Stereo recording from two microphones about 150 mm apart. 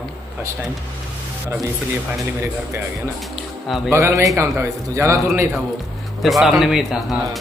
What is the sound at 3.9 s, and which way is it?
Speech, 20° right (ahead or behind).